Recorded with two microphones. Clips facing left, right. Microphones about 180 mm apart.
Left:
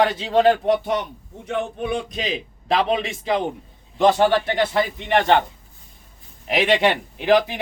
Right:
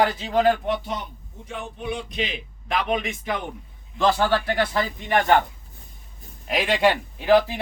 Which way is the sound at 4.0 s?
20° left (ahead or behind).